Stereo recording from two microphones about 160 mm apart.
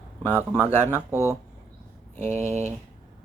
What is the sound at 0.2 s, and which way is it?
Speech, 15° left (ahead or behind).